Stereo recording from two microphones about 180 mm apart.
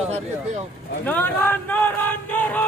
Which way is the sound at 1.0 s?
10° left (ahead or behind).